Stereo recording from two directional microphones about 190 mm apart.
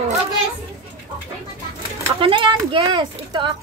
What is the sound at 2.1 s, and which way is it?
Speech, 25° right (ahead or behind).